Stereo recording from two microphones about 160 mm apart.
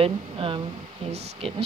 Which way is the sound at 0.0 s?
35° right (ahead or behind).